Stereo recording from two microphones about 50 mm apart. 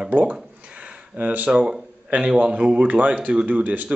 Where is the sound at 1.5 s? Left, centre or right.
Centre.